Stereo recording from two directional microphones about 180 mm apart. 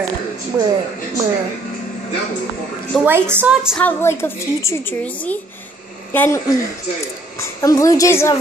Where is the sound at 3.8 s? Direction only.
10° left (ahead or behind).